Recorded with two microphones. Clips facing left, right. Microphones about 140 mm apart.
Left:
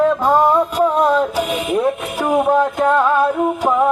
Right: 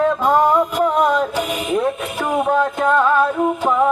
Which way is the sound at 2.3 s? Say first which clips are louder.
Left 3 dB; 10° left (ahead or behind).